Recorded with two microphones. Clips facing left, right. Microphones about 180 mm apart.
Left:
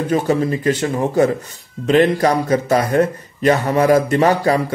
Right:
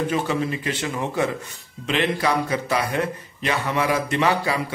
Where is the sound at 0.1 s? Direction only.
40° left (ahead or behind).